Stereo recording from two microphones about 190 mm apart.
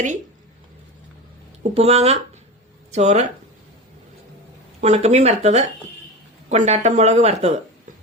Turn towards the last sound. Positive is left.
turn(degrees=-35)  # may be behind; listen again after turning